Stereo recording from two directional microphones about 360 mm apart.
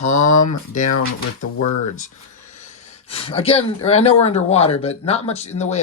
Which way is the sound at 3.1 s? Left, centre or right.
Centre.